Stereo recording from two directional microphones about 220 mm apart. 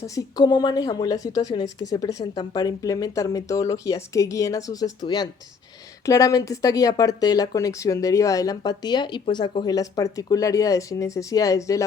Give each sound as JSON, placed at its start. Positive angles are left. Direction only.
{"t": 0.0, "sound": "speech", "side_deg": 15}